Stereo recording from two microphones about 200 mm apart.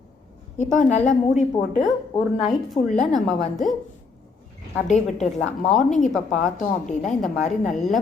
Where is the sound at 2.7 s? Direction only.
30° left (ahead or behind).